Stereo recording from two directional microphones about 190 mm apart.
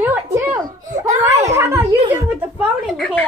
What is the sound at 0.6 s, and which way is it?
Giggle, 40° right (ahead or behind).